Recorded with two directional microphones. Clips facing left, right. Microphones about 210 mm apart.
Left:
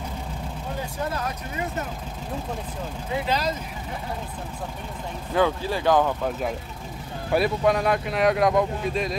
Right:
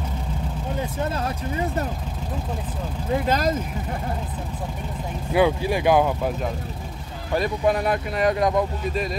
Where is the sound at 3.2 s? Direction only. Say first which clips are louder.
Right 3 dB; 50° right (ahead or behind).